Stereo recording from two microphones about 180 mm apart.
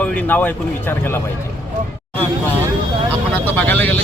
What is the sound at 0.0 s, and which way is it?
Speech, 5° left (ahead or behind).